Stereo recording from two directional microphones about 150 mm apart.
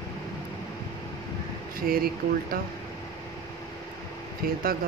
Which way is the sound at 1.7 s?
80° right.